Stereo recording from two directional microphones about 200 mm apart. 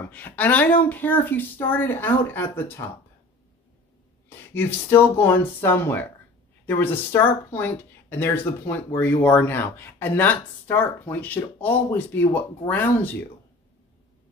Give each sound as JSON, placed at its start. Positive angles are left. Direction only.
{"t": 0.1, "sound": "speech", "side_deg": 10}
{"t": 4.6, "sound": "speech", "side_deg": 10}